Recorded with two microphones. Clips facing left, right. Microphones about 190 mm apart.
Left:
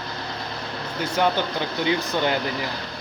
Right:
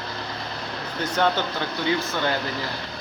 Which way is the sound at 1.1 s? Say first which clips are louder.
Left 1 dB; 10° left (ahead or behind).